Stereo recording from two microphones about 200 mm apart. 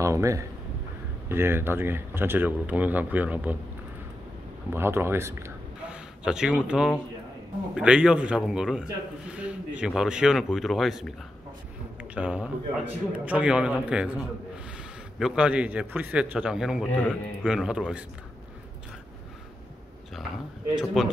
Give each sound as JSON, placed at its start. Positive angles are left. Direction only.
{"t": 0.0, "sound": "speech", "side_deg": -15}
{"t": 4.7, "sound": "a man's voice", "side_deg": -10}
{"t": 12.0, "sound": "a sound", "side_deg": -5}
{"t": 13.1, "sound": "speech", "side_deg": -5}
{"t": 20.7, "sound": "speech", "side_deg": 0}